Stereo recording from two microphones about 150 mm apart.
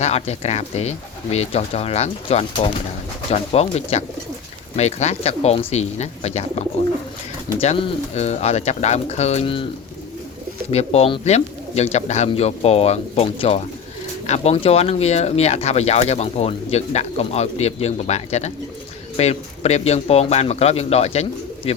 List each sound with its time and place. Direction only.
0.0 s speech: 45° left (ahead or behind)
10.7 s speech: 45° left (ahead or behind)